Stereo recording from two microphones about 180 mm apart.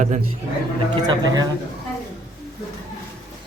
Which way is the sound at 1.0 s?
20° right (ahead or behind).